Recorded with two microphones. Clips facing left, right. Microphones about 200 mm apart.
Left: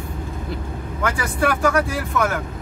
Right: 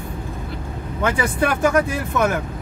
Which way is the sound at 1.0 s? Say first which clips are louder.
Right 2 dB; 20° right (ahead or behind).